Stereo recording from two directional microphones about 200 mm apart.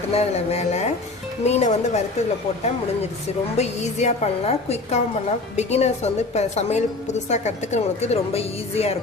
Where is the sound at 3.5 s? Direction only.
35° left (ahead or behind).